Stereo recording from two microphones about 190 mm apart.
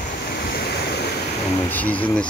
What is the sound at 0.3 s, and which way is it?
Waves, 55° left (ahead or behind).